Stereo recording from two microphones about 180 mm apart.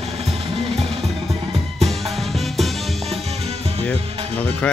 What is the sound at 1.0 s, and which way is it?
Music, centre (ahead or behind).